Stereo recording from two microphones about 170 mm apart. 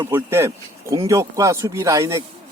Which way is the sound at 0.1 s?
15° right (ahead or behind).